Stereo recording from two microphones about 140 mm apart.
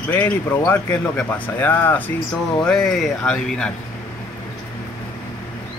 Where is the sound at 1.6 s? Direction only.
15° left (ahead or behind).